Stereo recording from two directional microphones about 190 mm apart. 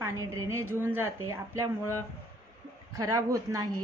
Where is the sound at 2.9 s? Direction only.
20° right (ahead or behind).